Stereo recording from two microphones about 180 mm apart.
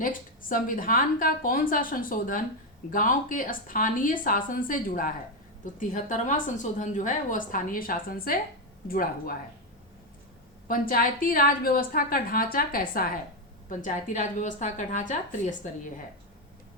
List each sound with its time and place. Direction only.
0.0 s a woman's voice: 50° left (ahead or behind)
10.7 s a woman's voice: 50° left (ahead or behind)